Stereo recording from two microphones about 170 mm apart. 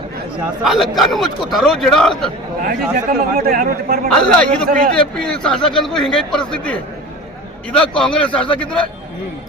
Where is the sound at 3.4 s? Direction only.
55° right (ahead or behind).